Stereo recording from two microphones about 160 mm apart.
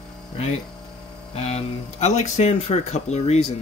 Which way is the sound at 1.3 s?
40° left (ahead or behind).